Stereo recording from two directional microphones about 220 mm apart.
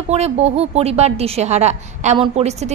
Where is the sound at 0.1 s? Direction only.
30° right (ahead or behind).